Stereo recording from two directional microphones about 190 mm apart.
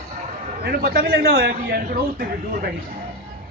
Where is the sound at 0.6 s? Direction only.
55° right (ahead or behind).